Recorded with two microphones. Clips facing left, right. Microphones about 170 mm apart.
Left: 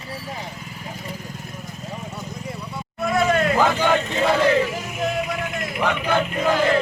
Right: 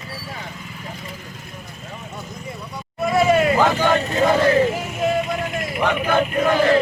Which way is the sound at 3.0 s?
5° right (ahead or behind).